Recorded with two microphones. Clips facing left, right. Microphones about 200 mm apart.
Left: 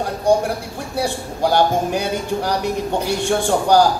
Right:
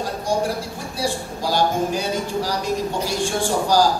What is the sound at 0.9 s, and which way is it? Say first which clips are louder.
A man's voice: left 3 dB; 60° left (ahead or behind).